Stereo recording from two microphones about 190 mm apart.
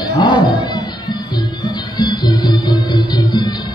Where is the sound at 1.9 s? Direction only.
20° left (ahead or behind).